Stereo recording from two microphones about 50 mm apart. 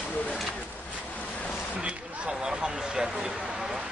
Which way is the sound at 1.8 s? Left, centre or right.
Centre.